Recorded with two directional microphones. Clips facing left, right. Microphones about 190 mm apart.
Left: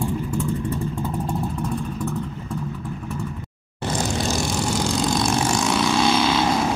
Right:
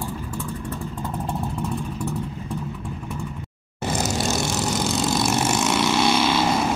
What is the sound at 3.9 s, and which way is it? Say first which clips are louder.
Vehicle: even; 5° right (ahead or behind).